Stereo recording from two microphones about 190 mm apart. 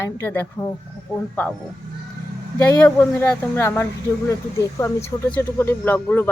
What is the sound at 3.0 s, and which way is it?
Speech, 10° left (ahead or behind).